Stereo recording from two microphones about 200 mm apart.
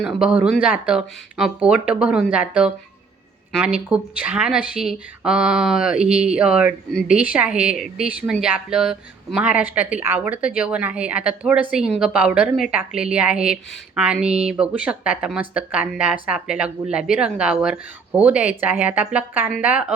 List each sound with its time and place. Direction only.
0.0 s speech: 5° right (ahead or behind)